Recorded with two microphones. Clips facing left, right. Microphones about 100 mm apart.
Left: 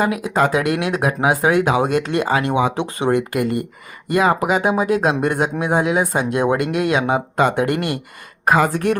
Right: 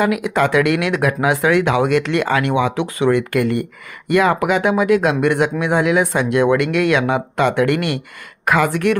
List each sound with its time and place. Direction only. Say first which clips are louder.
0.0 s speech: right 1 dB; 30° left (ahead or behind)